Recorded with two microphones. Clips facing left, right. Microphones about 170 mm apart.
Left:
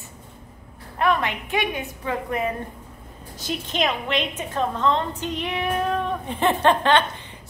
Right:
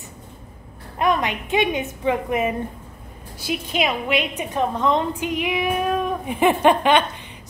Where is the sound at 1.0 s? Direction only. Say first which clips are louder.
Right 1 dB; 15° right (ahead or behind).